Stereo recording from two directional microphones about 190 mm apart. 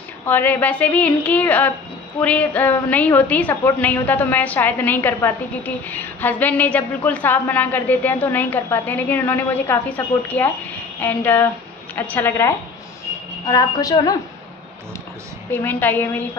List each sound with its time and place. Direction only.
0.3 s a woman's voice: 10° left (ahead or behind)
15.5 s a woman's voice: 10° left (ahead or behind)